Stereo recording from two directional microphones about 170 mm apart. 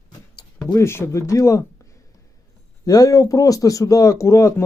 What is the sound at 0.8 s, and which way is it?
A man's voice, 15° left (ahead or behind).